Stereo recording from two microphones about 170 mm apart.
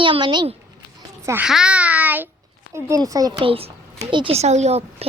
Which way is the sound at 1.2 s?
10° right (ahead or behind).